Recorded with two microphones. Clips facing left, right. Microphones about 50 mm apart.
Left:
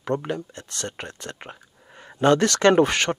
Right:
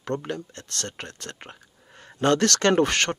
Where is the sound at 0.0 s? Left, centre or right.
Centre.